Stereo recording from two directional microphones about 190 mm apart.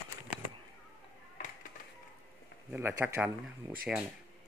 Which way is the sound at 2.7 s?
10° right (ahead or behind).